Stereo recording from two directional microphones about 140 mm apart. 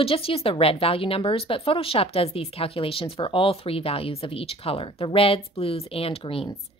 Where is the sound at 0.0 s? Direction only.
40° left (ahead or behind).